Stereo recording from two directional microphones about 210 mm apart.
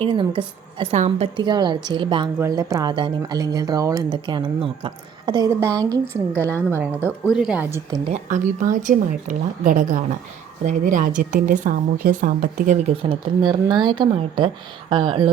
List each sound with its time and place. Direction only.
0.0 s a woman's voice: 25° right (ahead or behind)
8.0 s a woman's voice: 35° right (ahead or behind)